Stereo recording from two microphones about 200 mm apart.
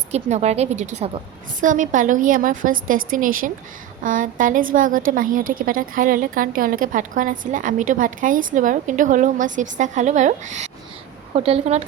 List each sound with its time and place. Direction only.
0.1 s a woman's voice: 35° right (ahead or behind)